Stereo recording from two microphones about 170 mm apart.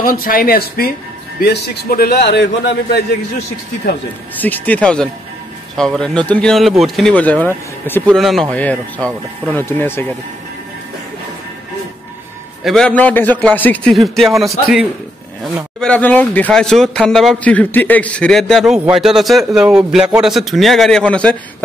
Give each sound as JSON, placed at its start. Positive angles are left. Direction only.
{"t": 0.0, "sound": "a man's voice", "side_deg": 55}
{"t": 4.4, "sound": "speech", "side_deg": 10}
{"t": 8.2, "sound": "speech", "side_deg": 0}
{"t": 12.6, "sound": "speech", "side_deg": 5}